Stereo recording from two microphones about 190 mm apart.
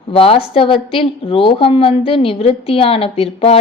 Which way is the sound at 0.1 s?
30° left (ahead or behind).